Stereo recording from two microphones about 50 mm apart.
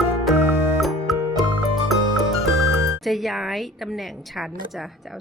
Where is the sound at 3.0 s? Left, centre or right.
Centre.